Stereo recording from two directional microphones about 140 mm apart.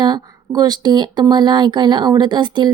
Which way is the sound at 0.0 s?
30° right (ahead or behind).